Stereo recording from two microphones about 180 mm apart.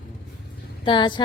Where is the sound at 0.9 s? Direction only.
25° left (ahead or behind).